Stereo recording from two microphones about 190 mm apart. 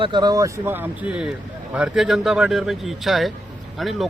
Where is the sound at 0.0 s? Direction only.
25° right (ahead or behind).